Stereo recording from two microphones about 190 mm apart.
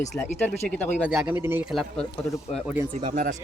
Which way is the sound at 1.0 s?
Centre (ahead or behind).